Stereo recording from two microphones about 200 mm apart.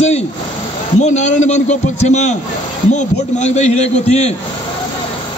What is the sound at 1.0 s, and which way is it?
A man's voice, 35° left (ahead or behind).